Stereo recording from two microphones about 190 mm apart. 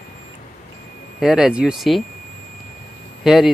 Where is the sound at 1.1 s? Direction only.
5° right (ahead or behind).